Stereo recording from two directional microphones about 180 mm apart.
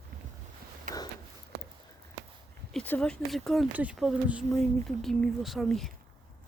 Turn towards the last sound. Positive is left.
turn(degrees=0)  # may be behind; listen again after turning